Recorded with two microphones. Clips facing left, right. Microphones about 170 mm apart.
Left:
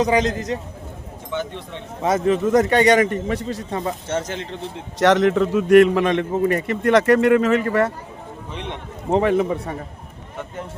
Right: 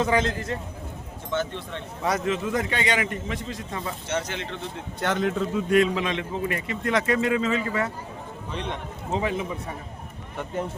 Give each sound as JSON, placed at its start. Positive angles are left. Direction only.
{"t": 0.0, "sound": "a man's voice", "side_deg": 15}
{"t": 2.2, "sound": "a man's voice", "side_deg": 40}
{"t": 4.9, "sound": "a man's voice", "side_deg": 80}
{"t": 6.8, "sound": "speech", "side_deg": 65}
{"t": 8.5, "sound": "speech", "side_deg": 20}
{"t": 9.0, "sound": "speech", "side_deg": 60}